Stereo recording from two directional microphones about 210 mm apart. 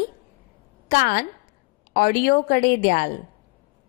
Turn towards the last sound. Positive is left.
turn(degrees=45)  # may be behind; listen again after turning